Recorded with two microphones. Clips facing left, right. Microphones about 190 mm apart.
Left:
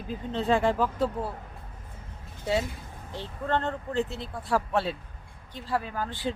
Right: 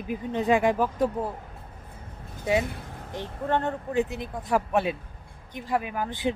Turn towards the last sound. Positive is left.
turn(degrees=-20)  # may be behind; listen again after turning